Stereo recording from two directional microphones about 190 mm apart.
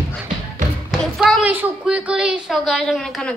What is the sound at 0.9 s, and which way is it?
A woman's voice, centre (ahead or behind).